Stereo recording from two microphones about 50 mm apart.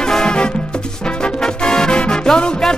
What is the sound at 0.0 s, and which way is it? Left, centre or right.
Music, centre.